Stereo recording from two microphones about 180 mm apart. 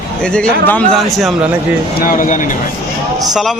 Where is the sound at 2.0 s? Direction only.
50° left (ahead or behind).